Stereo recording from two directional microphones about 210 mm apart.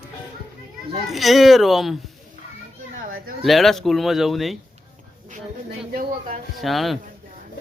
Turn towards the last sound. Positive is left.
turn(degrees=0)  # may be behind; listen again after turning